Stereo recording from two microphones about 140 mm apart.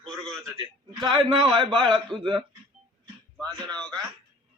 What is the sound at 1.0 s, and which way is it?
Speech, 35° right (ahead or behind).